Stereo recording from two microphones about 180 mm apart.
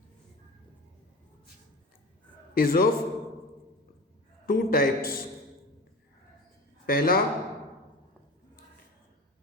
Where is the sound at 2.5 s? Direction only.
55° left (ahead or behind).